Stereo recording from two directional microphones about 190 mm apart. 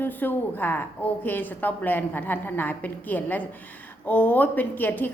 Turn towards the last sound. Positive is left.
turn(degrees=10)  # may be behind; listen again after turning